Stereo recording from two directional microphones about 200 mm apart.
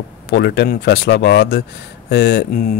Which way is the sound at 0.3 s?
55° left (ahead or behind).